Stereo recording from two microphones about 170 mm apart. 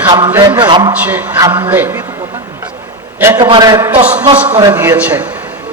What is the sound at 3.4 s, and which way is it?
A man's voice, 25° right (ahead or behind).